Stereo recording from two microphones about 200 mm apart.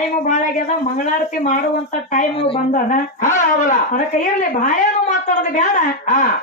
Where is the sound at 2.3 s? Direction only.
25° left (ahead or behind).